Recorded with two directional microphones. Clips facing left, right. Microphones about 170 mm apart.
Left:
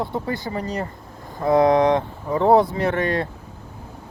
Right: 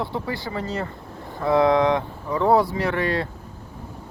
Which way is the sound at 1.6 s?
20° left (ahead or behind).